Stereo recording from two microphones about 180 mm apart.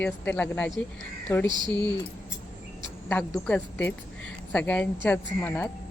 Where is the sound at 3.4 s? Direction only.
10° left (ahead or behind).